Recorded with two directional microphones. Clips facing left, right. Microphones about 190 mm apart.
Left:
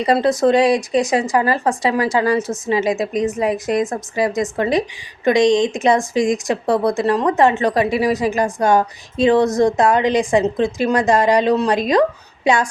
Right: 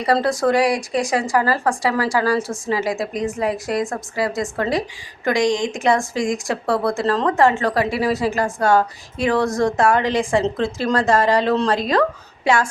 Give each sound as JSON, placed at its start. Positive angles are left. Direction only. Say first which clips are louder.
{"t": 0.0, "sound": "speech", "louder": "left 3 dB", "side_deg": 20}